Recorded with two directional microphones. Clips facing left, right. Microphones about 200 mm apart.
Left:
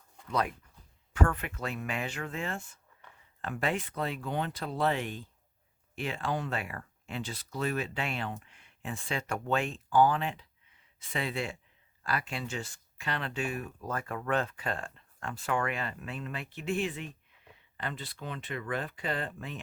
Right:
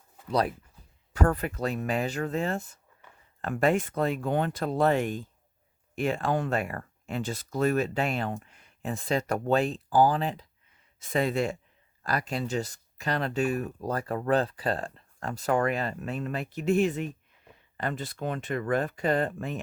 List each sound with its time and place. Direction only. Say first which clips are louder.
0.3 s speech: right 5 dB; 35° right (ahead or behind)